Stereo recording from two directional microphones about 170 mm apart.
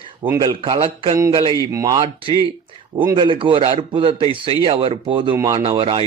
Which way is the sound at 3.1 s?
30° right (ahead or behind).